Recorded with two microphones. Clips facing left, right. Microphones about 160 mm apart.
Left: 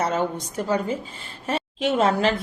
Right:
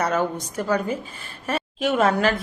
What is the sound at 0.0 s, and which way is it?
A woman's voice, 25° left (ahead or behind).